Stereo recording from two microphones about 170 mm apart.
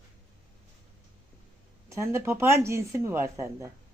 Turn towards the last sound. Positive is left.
turn(degrees=-15)  # may be behind; listen again after turning